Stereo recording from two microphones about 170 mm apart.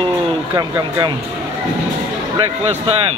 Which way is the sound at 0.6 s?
25° right (ahead or behind).